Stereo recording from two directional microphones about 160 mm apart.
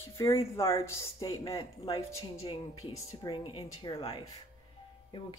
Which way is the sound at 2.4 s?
35° left (ahead or behind).